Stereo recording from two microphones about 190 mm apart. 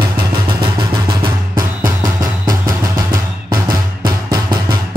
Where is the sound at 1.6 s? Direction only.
15° right (ahead or behind).